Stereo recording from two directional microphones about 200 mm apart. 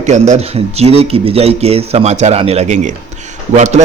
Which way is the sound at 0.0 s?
35° right (ahead or behind).